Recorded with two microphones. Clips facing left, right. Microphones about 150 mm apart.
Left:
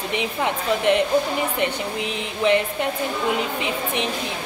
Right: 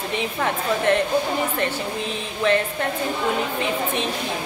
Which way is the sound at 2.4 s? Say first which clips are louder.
Left 1 dB; 15° left (ahead or behind).